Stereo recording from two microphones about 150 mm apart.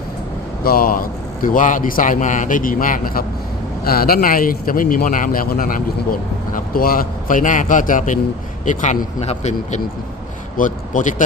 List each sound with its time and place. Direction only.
0.6 s speech: 80° left
3.8 s speech: 90° left; by 9.8 s 50° left (ahead or behind)
10.6 s a man's voice: 60° left (ahead or behind)